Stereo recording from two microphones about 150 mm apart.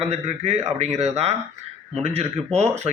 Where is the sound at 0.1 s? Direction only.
45° right (ahead or behind).